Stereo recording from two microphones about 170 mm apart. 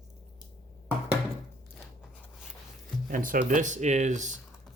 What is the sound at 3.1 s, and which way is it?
Speech, 55° right (ahead or behind).